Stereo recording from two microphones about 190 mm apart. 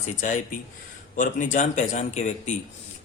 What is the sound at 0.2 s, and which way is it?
Speech, 40° left (ahead or behind).